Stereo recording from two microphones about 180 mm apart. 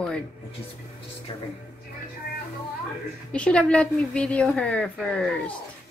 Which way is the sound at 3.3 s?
5° left (ahead or behind).